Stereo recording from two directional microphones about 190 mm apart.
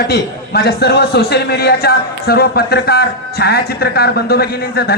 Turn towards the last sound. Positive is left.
turn(degrees=55)  # may be behind; listen again after turning